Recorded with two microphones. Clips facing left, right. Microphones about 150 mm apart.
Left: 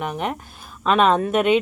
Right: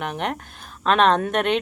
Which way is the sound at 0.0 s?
5° left (ahead or behind).